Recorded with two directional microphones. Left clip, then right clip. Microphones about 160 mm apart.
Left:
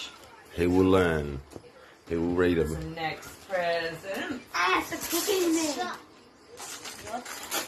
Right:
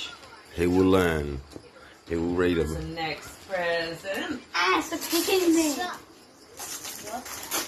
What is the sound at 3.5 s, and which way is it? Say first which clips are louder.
Speech: even; 35° left (ahead or behind).